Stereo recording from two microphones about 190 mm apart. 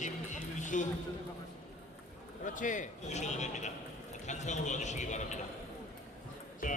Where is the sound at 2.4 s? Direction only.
45° left (ahead or behind).